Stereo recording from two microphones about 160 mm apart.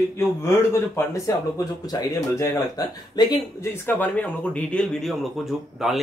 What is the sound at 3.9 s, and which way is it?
Speech, 10° left (ahead or behind).